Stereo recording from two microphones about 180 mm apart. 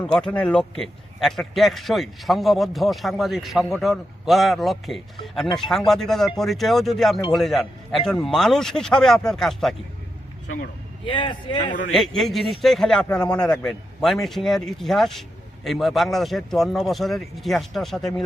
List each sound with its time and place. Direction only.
0.0 s a man's voice: 5° left (ahead or behind)
11.0 s a man's voice: 25° left (ahead or behind)
11.9 s a man's voice: centre (ahead or behind)